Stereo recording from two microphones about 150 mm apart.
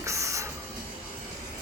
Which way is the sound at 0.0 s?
20° right (ahead or behind).